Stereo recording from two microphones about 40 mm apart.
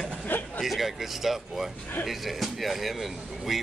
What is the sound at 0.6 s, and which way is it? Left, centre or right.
Speech, centre.